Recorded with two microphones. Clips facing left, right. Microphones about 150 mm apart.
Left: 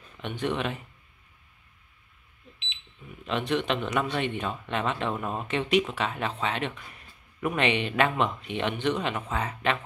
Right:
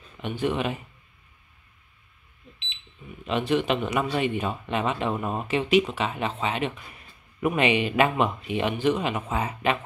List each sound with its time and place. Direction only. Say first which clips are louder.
0.2 s speech: right 3 dB; 5° right (ahead or behind)
3.3 s speech: right 3 dB; 5° right (ahead or behind)